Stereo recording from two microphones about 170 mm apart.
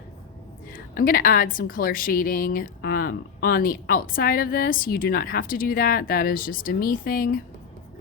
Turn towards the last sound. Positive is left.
turn(degrees=55)  # may be behind; listen again after turning